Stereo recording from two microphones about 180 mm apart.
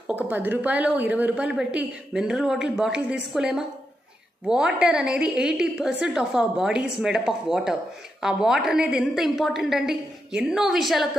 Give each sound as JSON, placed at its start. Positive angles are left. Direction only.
{"t": 0.0, "sound": "a woman's voice", "side_deg": -10}